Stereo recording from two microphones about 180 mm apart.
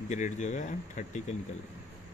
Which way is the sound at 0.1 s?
40° left (ahead or behind).